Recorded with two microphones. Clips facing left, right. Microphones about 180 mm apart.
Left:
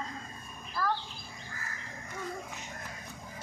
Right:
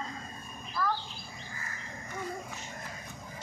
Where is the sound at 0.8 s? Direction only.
5° left (ahead or behind).